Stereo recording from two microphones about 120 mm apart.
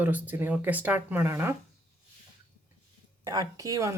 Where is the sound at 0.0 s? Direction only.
15° right (ahead or behind).